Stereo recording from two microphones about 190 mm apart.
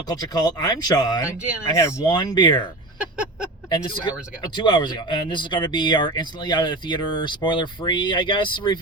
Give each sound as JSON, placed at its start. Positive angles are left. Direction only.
{"t": 0.1, "sound": "speech", "side_deg": 20}
{"t": 3.7, "sound": "speech", "side_deg": 25}